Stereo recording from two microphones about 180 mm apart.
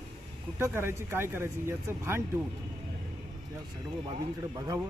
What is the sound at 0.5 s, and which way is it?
Speech, 15° right (ahead or behind).